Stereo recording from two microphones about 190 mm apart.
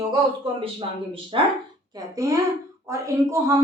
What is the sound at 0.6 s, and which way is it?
Speech, 30° right (ahead or behind).